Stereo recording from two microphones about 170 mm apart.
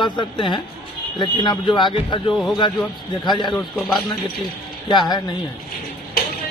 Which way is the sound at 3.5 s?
Centre (ahead or behind).